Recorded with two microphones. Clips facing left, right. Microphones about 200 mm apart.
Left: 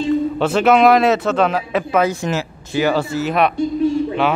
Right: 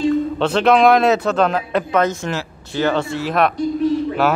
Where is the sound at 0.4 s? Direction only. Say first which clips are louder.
Left 1 dB; 5° left (ahead or behind).